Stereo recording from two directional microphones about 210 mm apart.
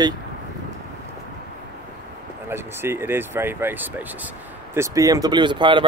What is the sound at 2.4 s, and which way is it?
Speech, 10° right (ahead or behind).